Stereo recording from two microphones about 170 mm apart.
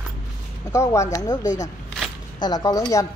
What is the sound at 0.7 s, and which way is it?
Speech, 15° left (ahead or behind).